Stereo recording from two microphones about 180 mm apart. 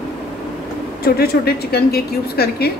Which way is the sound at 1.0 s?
60° left (ahead or behind).